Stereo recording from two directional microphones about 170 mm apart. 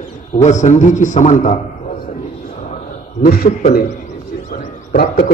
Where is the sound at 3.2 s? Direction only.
60° left (ahead or behind).